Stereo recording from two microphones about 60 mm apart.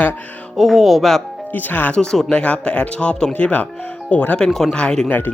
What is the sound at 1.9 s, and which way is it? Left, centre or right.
Speech, centre.